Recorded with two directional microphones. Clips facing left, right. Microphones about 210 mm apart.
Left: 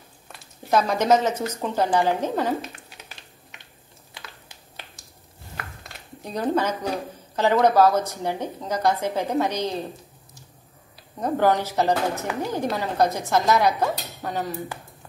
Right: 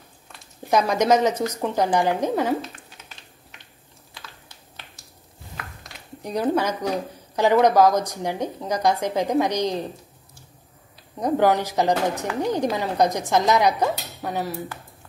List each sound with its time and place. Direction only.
0.7 s speech: 15° right (ahead or behind)
6.2 s speech: 10° right (ahead or behind)
11.1 s speech: 15° right (ahead or behind)